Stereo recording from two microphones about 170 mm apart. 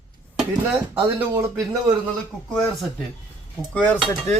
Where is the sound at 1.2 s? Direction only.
15° right (ahead or behind).